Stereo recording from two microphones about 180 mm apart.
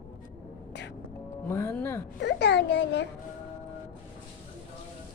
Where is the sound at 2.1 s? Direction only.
75° left (ahead or behind).